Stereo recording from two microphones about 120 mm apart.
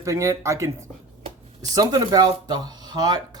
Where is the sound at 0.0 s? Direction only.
25° right (ahead or behind).